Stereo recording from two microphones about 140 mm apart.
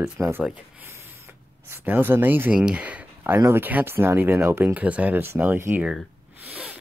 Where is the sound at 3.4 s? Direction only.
15° right (ahead or behind).